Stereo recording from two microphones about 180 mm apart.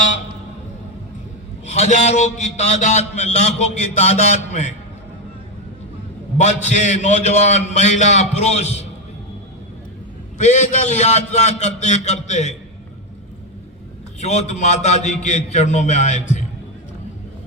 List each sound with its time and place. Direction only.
1.8 s a man's voice: 40° left (ahead or behind)
6.3 s a man's voice: 40° left (ahead or behind)
10.3 s a man's voice: 40° left (ahead or behind)
14.2 s a man's voice: 40° left (ahead or behind)